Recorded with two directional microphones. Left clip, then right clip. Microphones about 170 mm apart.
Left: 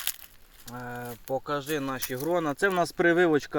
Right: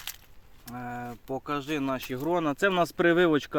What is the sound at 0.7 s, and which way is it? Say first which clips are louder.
Speech: right 1 dB; 20° right (ahead or behind).